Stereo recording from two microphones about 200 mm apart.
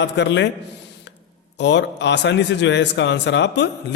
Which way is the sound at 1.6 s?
60° left (ahead or behind).